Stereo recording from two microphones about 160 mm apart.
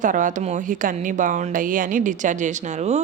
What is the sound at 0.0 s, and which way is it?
A woman's voice, 55° right (ahead or behind).